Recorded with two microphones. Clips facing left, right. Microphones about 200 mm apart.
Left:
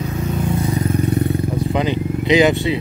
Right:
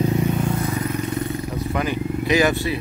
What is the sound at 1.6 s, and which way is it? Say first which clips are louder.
Vehicle: left 4 dB; 20° left (ahead or behind).